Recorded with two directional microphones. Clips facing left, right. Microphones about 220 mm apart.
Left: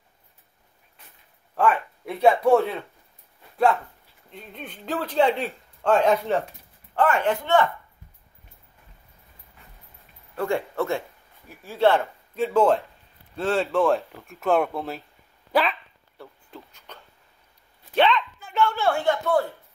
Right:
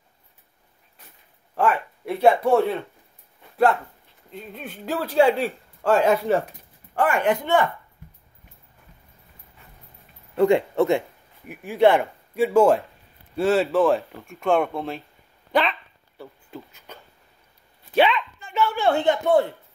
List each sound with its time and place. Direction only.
1.6 s speech: centre (ahead or behind)
4.3 s speech: 5° right (ahead or behind)
10.3 s speech: 20° right (ahead or behind); by 15.7 s 5° left (ahead or behind)
16.2 s a sound: 5° right (ahead or behind)
18.4 s bow-wow: centre (ahead or behind)
18.8 s a man's voice: 20° right (ahead or behind)